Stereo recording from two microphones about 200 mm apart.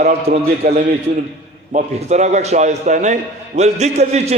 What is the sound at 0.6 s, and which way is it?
A man's voice, 45° right (ahead or behind).